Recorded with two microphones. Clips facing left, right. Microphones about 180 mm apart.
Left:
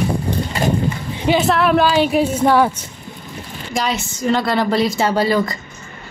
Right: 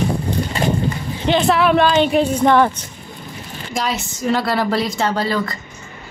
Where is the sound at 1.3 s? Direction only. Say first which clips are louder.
Even; centre (ahead or behind).